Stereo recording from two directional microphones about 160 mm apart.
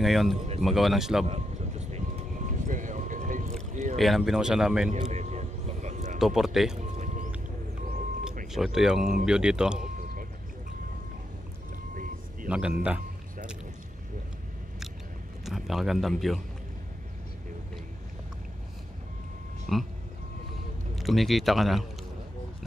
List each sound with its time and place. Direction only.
0.0 s speech: centre (ahead or behind)
1.2 s vehicle: 45° right (ahead or behind)
4.0 s speech: centre (ahead or behind)
4.9 s a sound: 45° right (ahead or behind)
6.1 s speech: centre (ahead or behind)
6.8 s music: 50° right (ahead or behind)
8.5 s speech: 5° right (ahead or behind)
11.9 s vehicle: 55° right (ahead or behind)
12.4 s speech: 5° right (ahead or behind)
15.4 s speech: centre (ahead or behind)
19.7 s speech: centre (ahead or behind)
20.9 s speech: centre (ahead or behind)